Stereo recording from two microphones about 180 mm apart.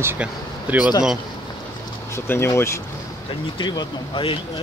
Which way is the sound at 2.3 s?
15° left (ahead or behind).